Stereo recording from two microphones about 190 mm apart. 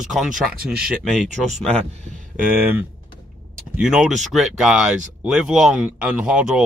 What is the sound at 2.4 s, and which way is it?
Speech, 10° right (ahead or behind).